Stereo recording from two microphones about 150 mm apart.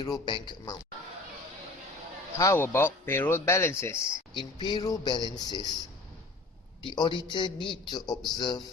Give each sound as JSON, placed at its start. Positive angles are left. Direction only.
{"t": 0.0, "sound": "speech", "side_deg": 30}
{"t": 2.4, "sound": "speech", "side_deg": 20}
{"t": 4.4, "sound": "speech", "side_deg": 30}
{"t": 6.8, "sound": "a man's voice", "side_deg": 30}